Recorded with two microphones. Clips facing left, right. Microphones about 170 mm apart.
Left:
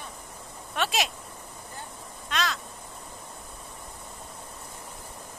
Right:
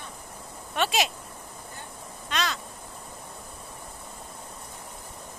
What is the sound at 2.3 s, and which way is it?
Crow, centre (ahead or behind).